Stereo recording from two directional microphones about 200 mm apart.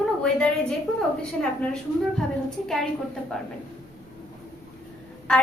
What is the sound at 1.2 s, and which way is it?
A woman's voice, 5° left (ahead or behind).